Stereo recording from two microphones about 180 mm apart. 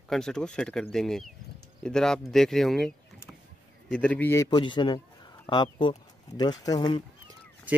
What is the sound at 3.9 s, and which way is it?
A man's voice, 5° left (ahead or behind).